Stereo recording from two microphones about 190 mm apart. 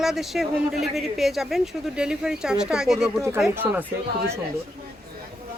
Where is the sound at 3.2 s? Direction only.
15° right (ahead or behind).